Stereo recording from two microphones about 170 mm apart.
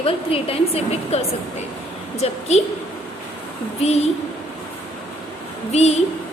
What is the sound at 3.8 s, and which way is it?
Speech, 40° left (ahead or behind).